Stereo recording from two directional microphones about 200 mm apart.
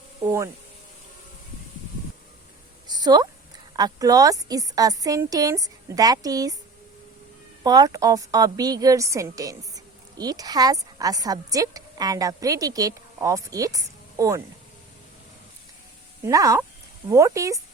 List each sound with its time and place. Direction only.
0.3 s speech: 15° right (ahead or behind)
2.8 s a sound: 20° right (ahead or behind)
3.8 s a woman's voice: 20° right (ahead or behind)
7.6 s a woman's voice: 20° right (ahead or behind)
16.2 s a woman's voice: 15° right (ahead or behind)